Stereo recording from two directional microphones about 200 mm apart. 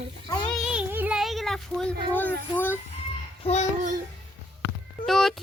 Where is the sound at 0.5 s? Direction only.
5° right (ahead or behind).